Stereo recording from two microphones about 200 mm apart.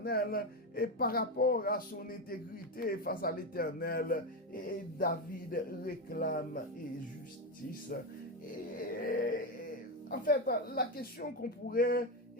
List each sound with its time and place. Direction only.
0.0 s speech: 50° left (ahead or behind)
8.8 s speech: 45° left (ahead or behind)